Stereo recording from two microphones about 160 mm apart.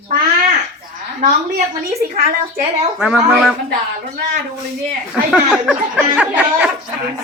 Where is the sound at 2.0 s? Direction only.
65° right (ahead or behind).